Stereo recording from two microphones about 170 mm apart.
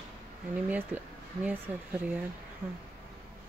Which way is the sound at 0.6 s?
10° right (ahead or behind).